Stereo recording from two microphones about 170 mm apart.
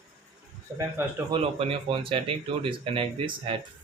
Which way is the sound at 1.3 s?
35° right (ahead or behind).